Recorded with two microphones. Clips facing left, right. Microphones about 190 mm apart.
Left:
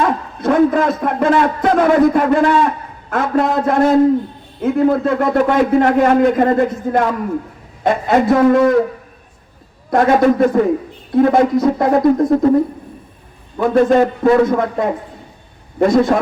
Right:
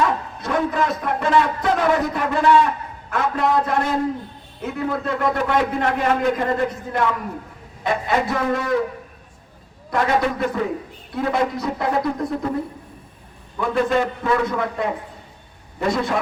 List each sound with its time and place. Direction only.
0.0 s a man's voice: 50° left (ahead or behind)
9.9 s speech: 50° left (ahead or behind)
13.6 s speech: 45° left (ahead or behind)